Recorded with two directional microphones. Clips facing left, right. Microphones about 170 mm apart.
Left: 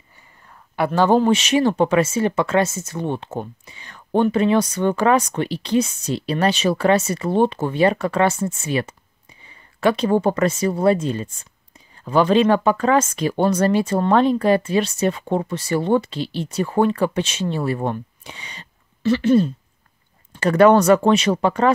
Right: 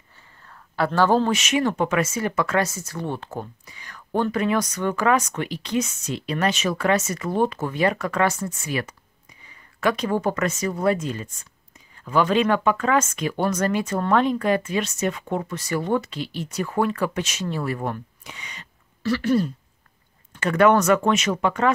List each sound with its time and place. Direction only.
0.5 s speech: 15° left (ahead or behind)
1.4 s speech: 30° left (ahead or behind)
20.3 s speech: 35° left (ahead or behind)